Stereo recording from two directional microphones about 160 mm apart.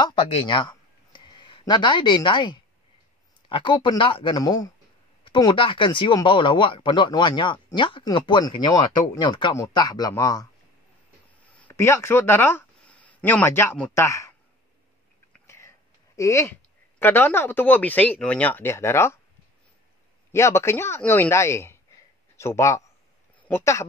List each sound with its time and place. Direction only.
0.0 s speech: 30° left (ahead or behind)
0.6 s a sound: 30° left (ahead or behind)
3.4 s speech: 30° left (ahead or behind)
11.5 s speech: 15° left (ahead or behind)
15.4 s a sound: 15° left (ahead or behind)
16.2 s speech: 20° left (ahead or behind)
20.2 s speech: 15° left (ahead or behind)